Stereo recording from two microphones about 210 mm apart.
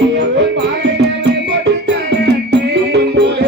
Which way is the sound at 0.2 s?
55° right (ahead or behind).